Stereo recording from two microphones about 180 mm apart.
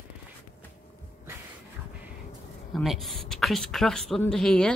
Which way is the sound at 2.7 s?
Centre (ahead or behind).